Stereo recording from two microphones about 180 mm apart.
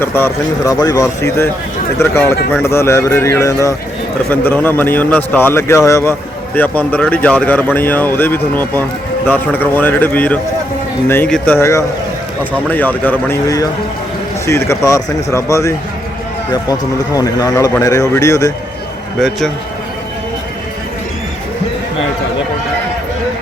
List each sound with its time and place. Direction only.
0.0 s a man's voice: 15° left (ahead or behind)
17.2 s a man's voice: 20° left (ahead or behind)